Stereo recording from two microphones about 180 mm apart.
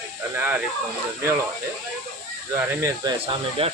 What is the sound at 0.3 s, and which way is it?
Speech, 10° right (ahead or behind).